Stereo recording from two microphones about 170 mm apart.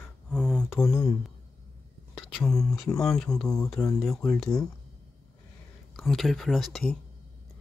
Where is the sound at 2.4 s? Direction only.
20° left (ahead or behind).